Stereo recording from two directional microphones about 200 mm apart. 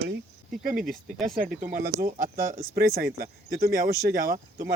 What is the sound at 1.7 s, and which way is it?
Speech, 45° right (ahead or behind).